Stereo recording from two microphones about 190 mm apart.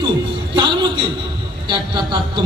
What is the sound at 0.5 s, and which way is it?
A man's voice, 25° right (ahead or behind).